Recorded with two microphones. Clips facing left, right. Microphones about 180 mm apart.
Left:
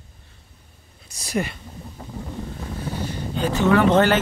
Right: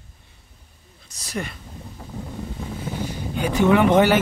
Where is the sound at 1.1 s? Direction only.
10° left (ahead or behind).